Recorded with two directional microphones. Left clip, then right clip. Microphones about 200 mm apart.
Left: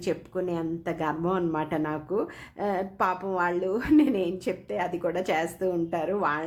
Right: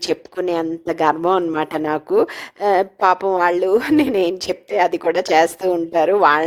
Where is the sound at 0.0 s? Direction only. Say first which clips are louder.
Right 8 dB; 45° right (ahead or behind).